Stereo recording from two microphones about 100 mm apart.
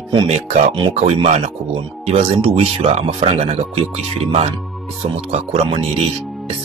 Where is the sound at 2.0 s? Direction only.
75° right (ahead or behind).